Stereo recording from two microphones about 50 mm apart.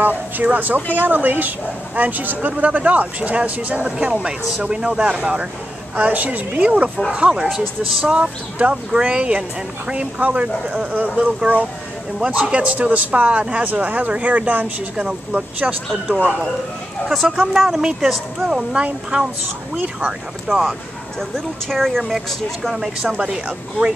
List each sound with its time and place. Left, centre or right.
0.0 s speech: right
7.1 s speech: centre
7.4 s speech: centre
8.0 s speech: right
17.0 s speech: centre
18.4 s speech: centre
19.1 s speech: right
20.4 s speech: centre
21.2 s speech: centre